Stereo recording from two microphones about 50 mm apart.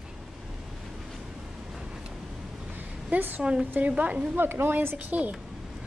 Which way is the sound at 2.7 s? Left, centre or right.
Right.